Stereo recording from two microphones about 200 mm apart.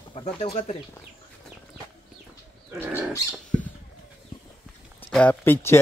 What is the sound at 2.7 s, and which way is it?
Bird, 10° right (ahead or behind).